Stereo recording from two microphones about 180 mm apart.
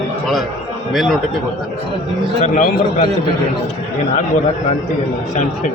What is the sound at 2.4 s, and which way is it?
Speech, 45° left (ahead or behind).